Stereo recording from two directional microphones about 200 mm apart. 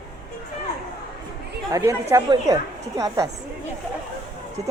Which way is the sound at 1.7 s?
15° right (ahead or behind).